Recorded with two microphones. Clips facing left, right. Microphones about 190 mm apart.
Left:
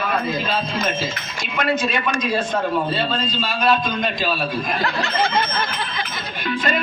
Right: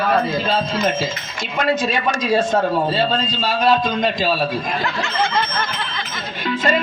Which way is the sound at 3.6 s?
25° right (ahead or behind).